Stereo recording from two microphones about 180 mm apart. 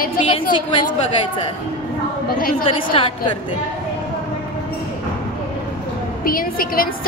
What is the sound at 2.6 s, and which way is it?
Speech, 30° left (ahead or behind).